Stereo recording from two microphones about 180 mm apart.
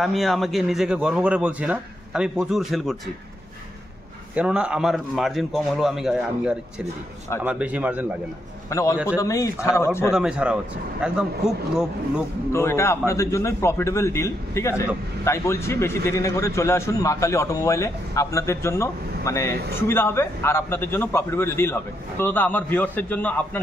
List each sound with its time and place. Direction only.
0.0 s a man's voice: centre (ahead or behind)
4.4 s a man's voice: 5° right (ahead or behind)
8.6 s a man's voice: 20° left (ahead or behind)
10.1 s a man's voice: 5° right (ahead or behind)
12.5 s a man's voice: 15° left (ahead or behind)